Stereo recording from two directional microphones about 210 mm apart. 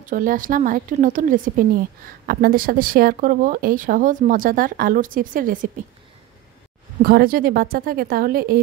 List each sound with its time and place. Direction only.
0.0 s speech: 40° right (ahead or behind)
7.0 s speech: 45° right (ahead or behind)